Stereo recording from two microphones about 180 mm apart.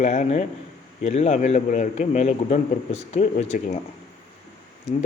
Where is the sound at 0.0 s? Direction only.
40° left (ahead or behind).